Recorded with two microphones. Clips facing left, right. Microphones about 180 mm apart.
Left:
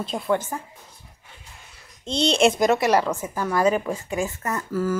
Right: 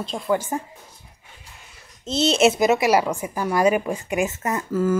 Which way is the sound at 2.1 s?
5° right (ahead or behind).